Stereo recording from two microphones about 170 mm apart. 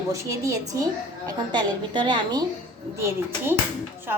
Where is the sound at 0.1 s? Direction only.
20° right (ahead or behind).